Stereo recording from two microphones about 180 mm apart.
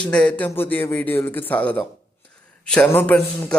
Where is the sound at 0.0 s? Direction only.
5° left (ahead or behind).